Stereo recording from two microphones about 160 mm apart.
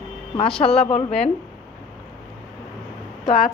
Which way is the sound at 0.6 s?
40° left (ahead or behind).